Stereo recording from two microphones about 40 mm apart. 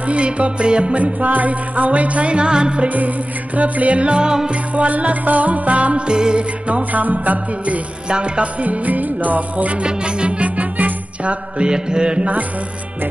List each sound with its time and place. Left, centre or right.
0.0 s music: right
2.9 s music: right; by 4.5 s centre
4.5 s music: right
6.0 s mantra: right
6.7 s music: right
8.1 s music: right
9.8 s music: right
11.5 s mantra: right